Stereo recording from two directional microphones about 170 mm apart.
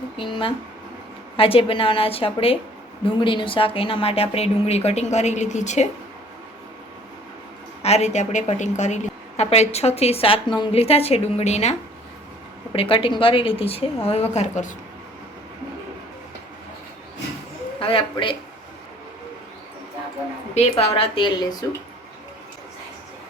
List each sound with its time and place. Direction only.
0.2 s speech: 30° left (ahead or behind)
7.8 s a woman's voice: 40° left (ahead or behind)
12.7 s speech: 30° left (ahead or behind)
17.7 s speech: 30° left (ahead or behind)
20.5 s speech: 35° left (ahead or behind)